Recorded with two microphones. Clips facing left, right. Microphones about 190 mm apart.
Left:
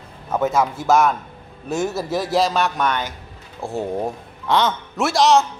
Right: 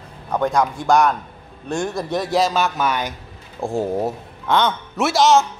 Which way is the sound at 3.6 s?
15° right (ahead or behind).